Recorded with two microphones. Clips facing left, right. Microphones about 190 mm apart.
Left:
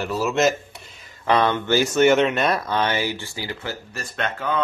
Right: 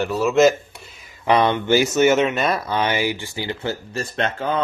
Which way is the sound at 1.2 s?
15° right (ahead or behind).